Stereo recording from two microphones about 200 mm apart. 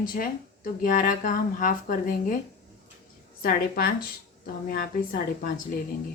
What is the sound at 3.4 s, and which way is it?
Speech, 45° left (ahead or behind).